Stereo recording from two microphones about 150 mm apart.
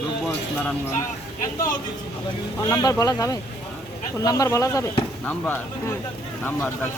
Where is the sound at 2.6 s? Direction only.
25° left (ahead or behind).